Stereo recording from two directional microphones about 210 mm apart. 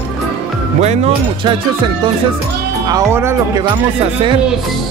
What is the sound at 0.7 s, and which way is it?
Speech, 30° right (ahead or behind).